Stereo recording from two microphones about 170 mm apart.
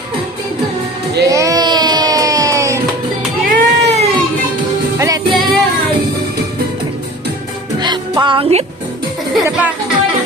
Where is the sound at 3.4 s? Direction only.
45° right (ahead or behind).